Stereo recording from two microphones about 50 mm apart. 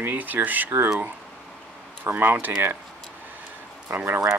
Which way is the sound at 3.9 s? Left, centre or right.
Right.